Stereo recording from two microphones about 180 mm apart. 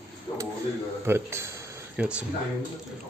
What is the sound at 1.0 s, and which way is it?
Speech, 15° right (ahead or behind).